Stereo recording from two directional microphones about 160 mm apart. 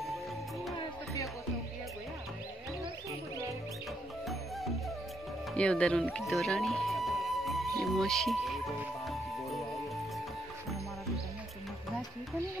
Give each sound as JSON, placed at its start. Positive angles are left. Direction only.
{"t": 0.7, "sound": "music", "side_deg": 20}
{"t": 5.5, "sound": "music", "side_deg": 5}